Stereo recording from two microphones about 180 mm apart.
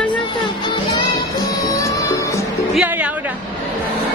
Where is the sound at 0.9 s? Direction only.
20° left (ahead or behind).